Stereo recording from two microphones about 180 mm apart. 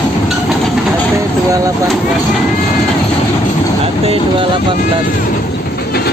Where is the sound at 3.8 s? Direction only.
35° right (ahead or behind).